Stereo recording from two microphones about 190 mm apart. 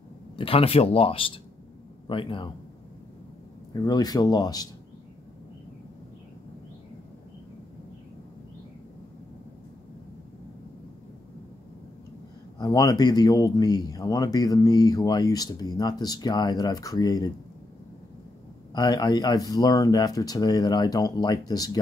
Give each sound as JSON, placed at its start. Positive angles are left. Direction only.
{"t": 0.4, "sound": "speech", "side_deg": 30}
{"t": 3.7, "sound": "speech", "side_deg": 20}
{"t": 12.5, "sound": "speech", "side_deg": 20}
{"t": 18.7, "sound": "speech", "side_deg": 20}